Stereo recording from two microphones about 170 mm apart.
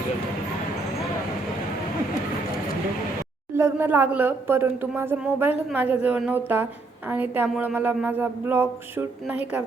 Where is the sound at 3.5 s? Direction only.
15° right (ahead or behind).